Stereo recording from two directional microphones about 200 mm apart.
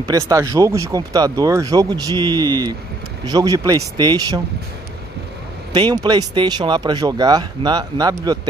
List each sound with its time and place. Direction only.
0.0 s speech: 15° right (ahead or behind)
5.7 s speech: 20° right (ahead or behind)